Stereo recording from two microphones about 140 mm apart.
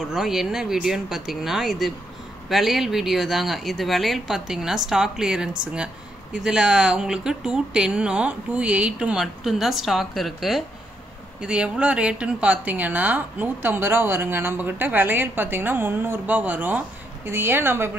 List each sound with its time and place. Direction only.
0.1 s speech: 5° right (ahead or behind)